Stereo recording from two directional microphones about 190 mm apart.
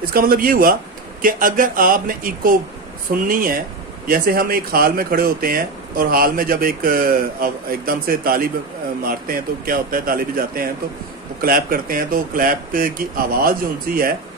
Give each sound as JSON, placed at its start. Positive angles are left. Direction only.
{"t": 0.0, "sound": "speech", "side_deg": -50}